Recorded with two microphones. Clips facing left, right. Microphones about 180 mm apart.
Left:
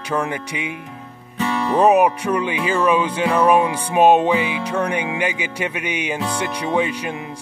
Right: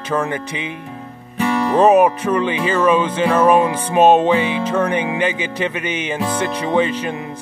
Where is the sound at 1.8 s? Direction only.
10° left (ahead or behind).